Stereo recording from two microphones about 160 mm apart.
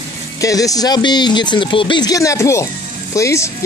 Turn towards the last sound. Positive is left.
turn(degrees=20)  # may be behind; listen again after turning